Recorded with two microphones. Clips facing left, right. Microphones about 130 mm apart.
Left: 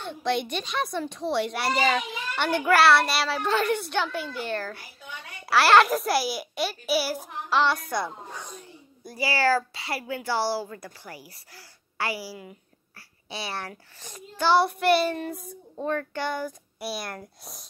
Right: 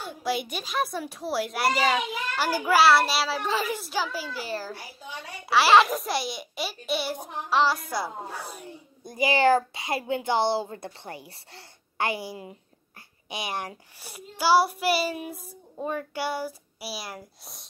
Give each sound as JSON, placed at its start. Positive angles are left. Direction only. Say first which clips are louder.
{"t": 0.0, "sound": "a child's voice", "louder": "left 2 dB", "side_deg": -5}
{"t": 9.0, "sound": "a child's voice", "louder": "right 3 dB", "side_deg": -20}